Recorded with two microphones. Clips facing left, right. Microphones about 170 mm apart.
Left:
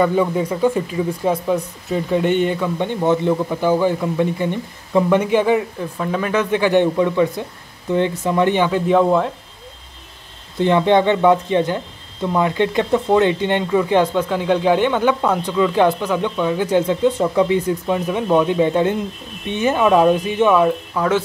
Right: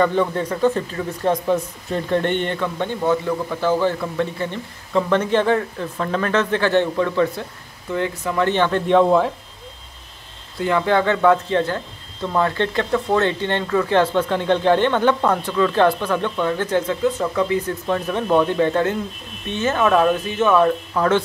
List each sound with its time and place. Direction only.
0.0 s speech: 10° left (ahead or behind)
10.6 s speech: 25° left (ahead or behind); by 21.2 s 5° left (ahead or behind)